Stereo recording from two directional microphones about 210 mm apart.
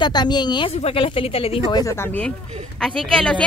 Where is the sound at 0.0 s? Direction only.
20° left (ahead or behind).